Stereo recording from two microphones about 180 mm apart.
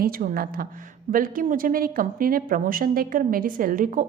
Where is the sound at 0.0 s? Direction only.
50° right (ahead or behind).